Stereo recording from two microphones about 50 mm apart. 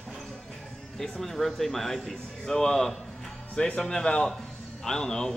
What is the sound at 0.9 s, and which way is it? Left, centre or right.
Speech, centre.